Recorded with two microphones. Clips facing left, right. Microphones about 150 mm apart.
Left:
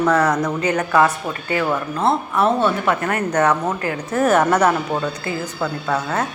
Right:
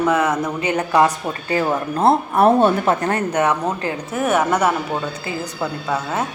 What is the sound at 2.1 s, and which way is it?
Speech, 45° right (ahead or behind).